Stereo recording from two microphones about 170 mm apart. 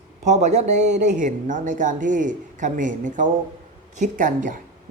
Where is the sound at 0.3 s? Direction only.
40° right (ahead or behind).